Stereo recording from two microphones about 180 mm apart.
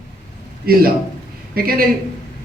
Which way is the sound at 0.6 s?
55° right (ahead or behind).